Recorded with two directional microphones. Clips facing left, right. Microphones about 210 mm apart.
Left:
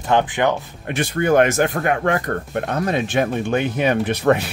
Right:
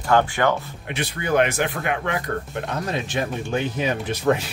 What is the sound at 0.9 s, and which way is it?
Speech, 50° left (ahead or behind).